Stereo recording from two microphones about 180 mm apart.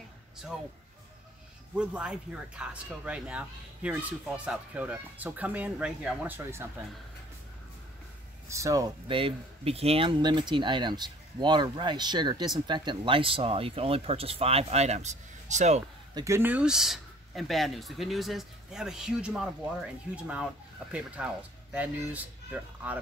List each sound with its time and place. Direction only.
0.5 s speech: centre (ahead or behind)
1.8 s speech: 5° right (ahead or behind)
8.5 s speech: 15° right (ahead or behind); by 15.8 s 40° right (ahead or behind)
16.2 s speech: 15° right (ahead or behind)